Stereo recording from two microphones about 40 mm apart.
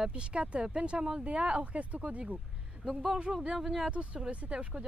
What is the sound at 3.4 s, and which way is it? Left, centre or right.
Speech, centre.